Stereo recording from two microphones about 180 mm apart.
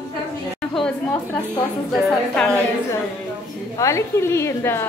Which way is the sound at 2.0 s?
5° left (ahead or behind).